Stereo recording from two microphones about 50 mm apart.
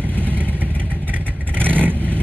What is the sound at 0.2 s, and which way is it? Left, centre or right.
Vehicle, right.